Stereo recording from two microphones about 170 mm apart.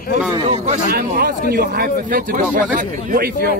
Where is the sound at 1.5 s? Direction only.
60° right (ahead or behind).